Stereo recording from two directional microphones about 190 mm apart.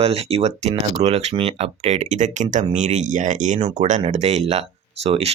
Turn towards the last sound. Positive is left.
turn(degrees=-35)  # may be behind; listen again after turning